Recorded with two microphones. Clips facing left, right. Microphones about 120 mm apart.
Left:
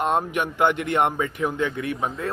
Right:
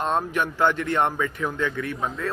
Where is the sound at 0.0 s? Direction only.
15° left (ahead or behind).